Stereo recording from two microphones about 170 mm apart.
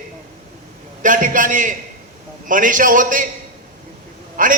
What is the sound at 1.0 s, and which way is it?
A man's voice, 50° right (ahead or behind).